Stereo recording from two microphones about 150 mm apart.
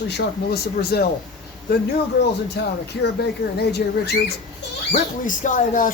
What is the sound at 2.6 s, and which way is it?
Speech, 90° left.